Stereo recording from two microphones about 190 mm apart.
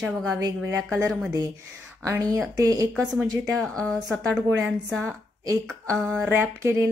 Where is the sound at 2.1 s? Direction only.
15° right (ahead or behind).